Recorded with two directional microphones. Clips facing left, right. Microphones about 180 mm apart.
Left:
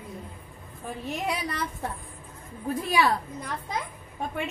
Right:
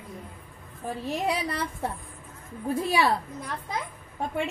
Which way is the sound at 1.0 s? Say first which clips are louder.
Right 2 dB; 30° right (ahead or behind).